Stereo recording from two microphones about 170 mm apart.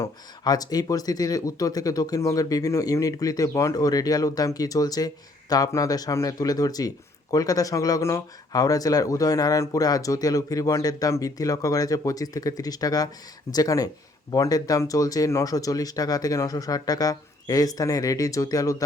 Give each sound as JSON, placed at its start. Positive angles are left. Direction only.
{"t": 0.0, "sound": "speech", "side_deg": 20}